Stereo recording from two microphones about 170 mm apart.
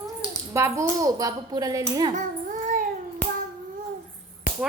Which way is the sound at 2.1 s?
50° right (ahead or behind).